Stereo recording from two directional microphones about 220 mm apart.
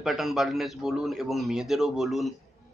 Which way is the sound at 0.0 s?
Centre (ahead or behind).